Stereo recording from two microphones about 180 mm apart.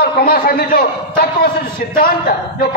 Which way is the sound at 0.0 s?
55° left (ahead or behind).